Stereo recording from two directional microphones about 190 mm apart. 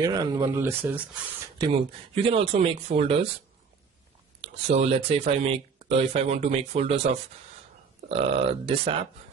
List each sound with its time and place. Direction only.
0.0 s speech: 20° right (ahead or behind)
1.6 s speech: 30° right (ahead or behind)
4.4 s speech: 35° right (ahead or behind)
8.1 s speech: 30° right (ahead or behind)